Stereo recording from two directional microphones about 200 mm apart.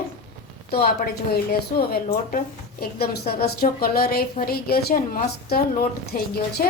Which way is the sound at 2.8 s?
50° left (ahead or behind).